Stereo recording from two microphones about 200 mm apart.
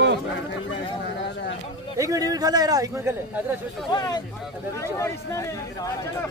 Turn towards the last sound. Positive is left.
turn(degrees=15)  # may be behind; listen again after turning